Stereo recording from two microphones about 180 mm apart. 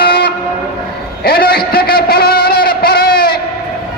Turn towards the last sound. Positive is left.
turn(degrees=55)  # may be behind; listen again after turning